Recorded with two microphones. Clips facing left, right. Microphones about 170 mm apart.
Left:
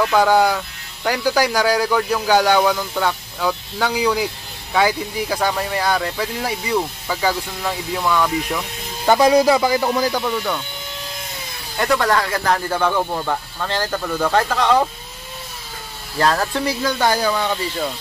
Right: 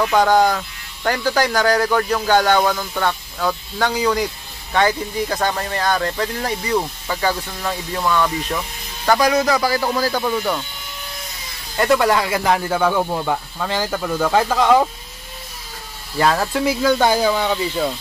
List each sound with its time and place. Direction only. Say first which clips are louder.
0.1 s speech: right 2 dB; 5° left (ahead or behind)
9.0 s speech: left 3 dB; 20° left (ahead or behind)
10.2 s speech: right 2 dB; 10° right (ahead or behind)
11.7 s speech: right 2 dB; centre (ahead or behind)
16.2 s speech: right 1 dB; 5° right (ahead or behind)